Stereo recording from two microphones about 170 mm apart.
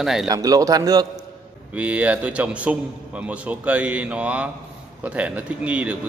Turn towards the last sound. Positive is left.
turn(degrees=-10)  # may be behind; listen again after turning